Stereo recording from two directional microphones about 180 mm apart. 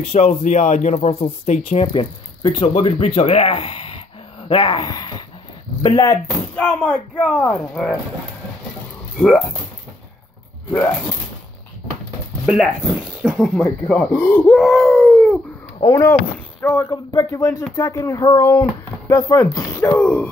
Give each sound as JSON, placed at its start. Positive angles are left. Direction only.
{"t": 0.1, "sound": "speech", "side_deg": 40}
{"t": 6.5, "sound": "speech", "side_deg": 5}
{"t": 10.7, "sound": "speech", "side_deg": 5}
{"t": 12.4, "sound": "speech", "side_deg": -5}
{"t": 13.6, "sound": "speech", "side_deg": 10}
{"t": 15.9, "sound": "speech", "side_deg": 15}